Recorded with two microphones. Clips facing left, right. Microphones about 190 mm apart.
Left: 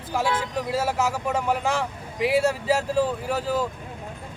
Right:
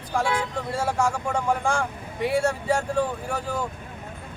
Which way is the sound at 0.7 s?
5° left (ahead or behind).